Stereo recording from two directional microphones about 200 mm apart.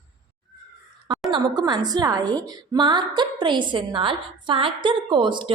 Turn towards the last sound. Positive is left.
turn(degrees=-25)  # may be behind; listen again after turning